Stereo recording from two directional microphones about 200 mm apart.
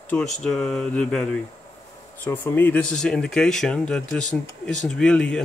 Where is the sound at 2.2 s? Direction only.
10° left (ahead or behind).